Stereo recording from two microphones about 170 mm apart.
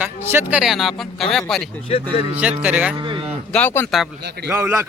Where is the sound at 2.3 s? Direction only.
10° right (ahead or behind).